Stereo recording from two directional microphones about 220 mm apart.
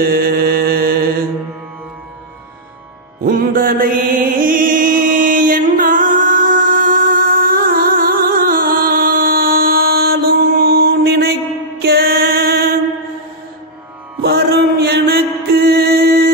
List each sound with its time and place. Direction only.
0.0 s mantra: 45° right (ahead or behind)
3.3 s mantra: 40° right (ahead or behind)
11.8 s music: 45° right (ahead or behind)
14.2 s mantra: 45° right (ahead or behind)